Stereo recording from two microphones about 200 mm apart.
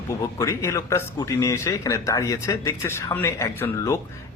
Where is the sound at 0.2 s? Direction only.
15° left (ahead or behind).